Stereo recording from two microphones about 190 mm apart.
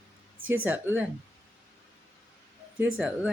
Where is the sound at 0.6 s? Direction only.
10° right (ahead or behind).